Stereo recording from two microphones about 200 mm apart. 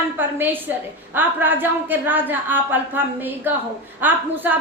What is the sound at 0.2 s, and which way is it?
A woman's voice, 10° right (ahead or behind).